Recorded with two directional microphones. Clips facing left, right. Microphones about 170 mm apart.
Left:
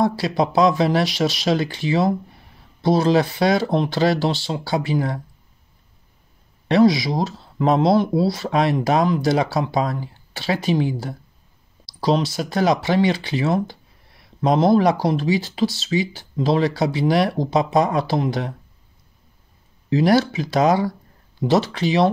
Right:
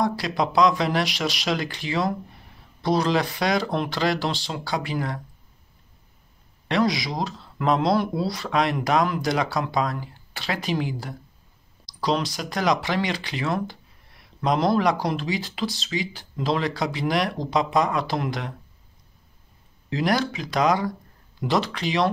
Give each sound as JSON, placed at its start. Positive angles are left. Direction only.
{"t": 0.0, "sound": "speech", "side_deg": 30}
{"t": 6.7, "sound": "speech", "side_deg": 30}
{"t": 20.0, "sound": "speech", "side_deg": 30}